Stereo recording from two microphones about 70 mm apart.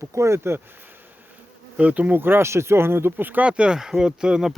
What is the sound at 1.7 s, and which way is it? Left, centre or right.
Speech, centre.